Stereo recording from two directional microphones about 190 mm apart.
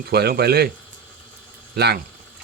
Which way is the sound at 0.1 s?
55° right (ahead or behind).